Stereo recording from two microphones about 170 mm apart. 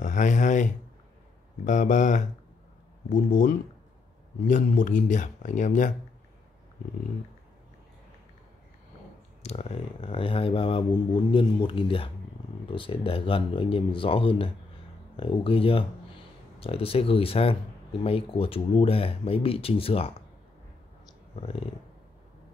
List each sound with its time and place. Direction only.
0.0 s a sound: 45° left (ahead or behind)
1.6 s speech: 45° left (ahead or behind)
9.4 s speech: 40° left (ahead or behind)
21.4 s speech: 35° left (ahead or behind)